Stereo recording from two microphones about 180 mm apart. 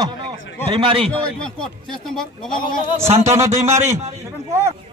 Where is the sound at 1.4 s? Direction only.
5° left (ahead or behind).